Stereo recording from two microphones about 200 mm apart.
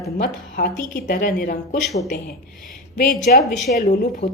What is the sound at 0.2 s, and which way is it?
A woman's voice, 50° left (ahead or behind).